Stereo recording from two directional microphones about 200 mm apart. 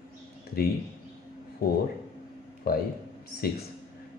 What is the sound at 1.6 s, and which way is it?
A man's voice, 50° left (ahead or behind).